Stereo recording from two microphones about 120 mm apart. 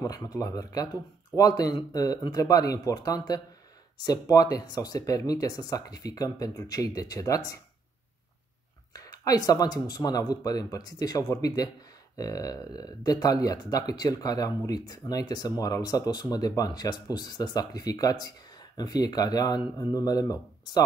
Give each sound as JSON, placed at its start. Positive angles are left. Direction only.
{"t": 0.0, "sound": "speech", "side_deg": 30}
{"t": 8.9, "sound": "speech", "side_deg": 30}